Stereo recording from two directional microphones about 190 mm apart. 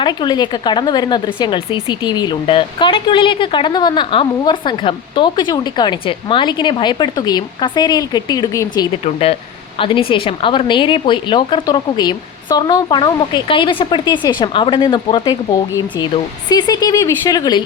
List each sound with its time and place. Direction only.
0.0 s speech: 25° left (ahead or behind)